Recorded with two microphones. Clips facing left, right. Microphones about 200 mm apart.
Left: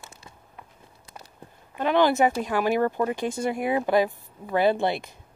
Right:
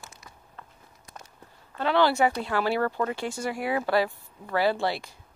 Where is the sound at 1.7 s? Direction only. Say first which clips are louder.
Left 2 dB; 15° left (ahead or behind).